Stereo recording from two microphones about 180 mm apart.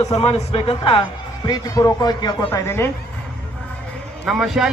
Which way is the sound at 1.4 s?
20° left (ahead or behind).